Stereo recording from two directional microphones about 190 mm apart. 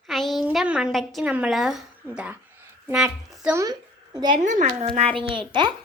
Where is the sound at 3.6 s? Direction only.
20° right (ahead or behind).